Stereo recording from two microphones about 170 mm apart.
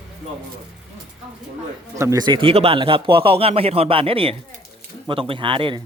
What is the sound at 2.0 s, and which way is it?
Speech, 20° right (ahead or behind).